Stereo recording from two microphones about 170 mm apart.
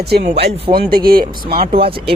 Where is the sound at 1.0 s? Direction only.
60° right (ahead or behind).